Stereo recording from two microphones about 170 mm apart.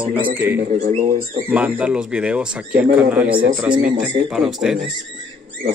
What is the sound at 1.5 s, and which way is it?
Speech, 10° right (ahead or behind).